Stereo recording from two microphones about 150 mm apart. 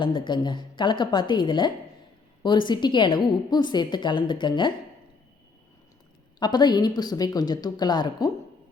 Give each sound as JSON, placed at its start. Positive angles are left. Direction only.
{"t": 0.0, "sound": "a woman's voice", "side_deg": 30}
{"t": 6.4, "sound": "speech", "side_deg": 30}